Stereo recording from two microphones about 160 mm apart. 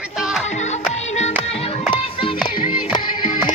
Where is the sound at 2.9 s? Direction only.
30° left (ahead or behind).